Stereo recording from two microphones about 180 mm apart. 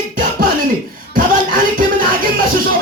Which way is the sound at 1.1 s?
50° right (ahead or behind).